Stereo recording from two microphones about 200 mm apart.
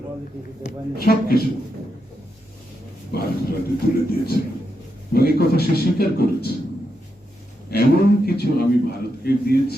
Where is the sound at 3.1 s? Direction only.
50° left (ahead or behind).